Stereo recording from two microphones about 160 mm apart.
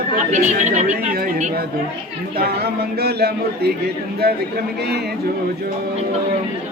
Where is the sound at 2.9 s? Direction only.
80° right.